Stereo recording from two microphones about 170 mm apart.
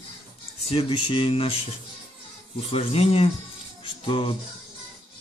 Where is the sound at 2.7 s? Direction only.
35° left (ahead or behind).